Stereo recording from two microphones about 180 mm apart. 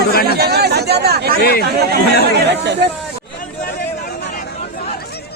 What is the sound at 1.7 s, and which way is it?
Speech, 60° right (ahead or behind).